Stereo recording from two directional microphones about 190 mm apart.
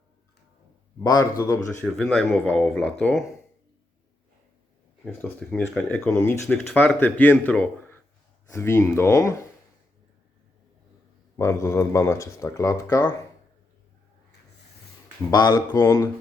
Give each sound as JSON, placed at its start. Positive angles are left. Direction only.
{"t": 1.0, "sound": "speech", "side_deg": 20}
{"t": 5.0, "sound": "speech", "side_deg": 5}
{"t": 11.3, "sound": "speech", "side_deg": 15}
{"t": 15.3, "sound": "speech", "side_deg": 20}